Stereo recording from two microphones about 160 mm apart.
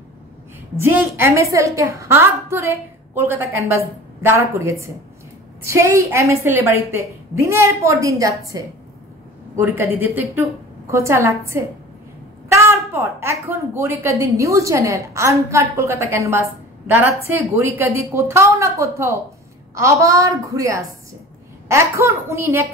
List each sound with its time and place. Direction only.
0.7 s a woman's voice: 15° right (ahead or behind)